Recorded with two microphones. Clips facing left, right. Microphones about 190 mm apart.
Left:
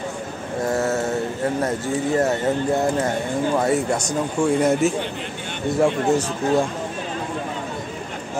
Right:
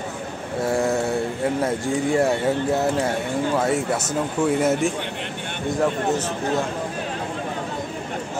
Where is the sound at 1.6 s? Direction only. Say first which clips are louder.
Even; 10° right (ahead or behind).